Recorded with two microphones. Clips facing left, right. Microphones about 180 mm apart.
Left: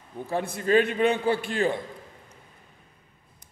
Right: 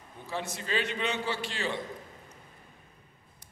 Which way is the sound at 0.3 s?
55° left (ahead or behind).